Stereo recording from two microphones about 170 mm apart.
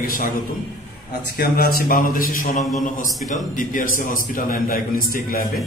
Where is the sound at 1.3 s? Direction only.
60° left (ahead or behind).